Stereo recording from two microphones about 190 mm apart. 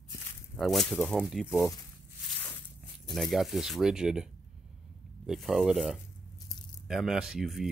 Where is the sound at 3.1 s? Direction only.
Centre (ahead or behind).